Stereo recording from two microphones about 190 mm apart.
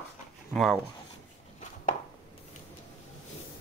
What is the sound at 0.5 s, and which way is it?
Speech, centre (ahead or behind).